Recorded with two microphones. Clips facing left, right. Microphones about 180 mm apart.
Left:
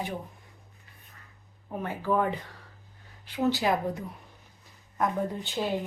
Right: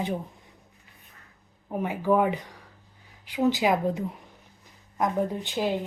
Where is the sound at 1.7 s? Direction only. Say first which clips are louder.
Right 4 dB; 15° right (ahead or behind).